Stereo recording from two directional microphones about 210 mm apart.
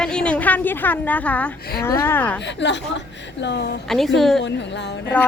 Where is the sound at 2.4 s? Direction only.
55° left (ahead or behind).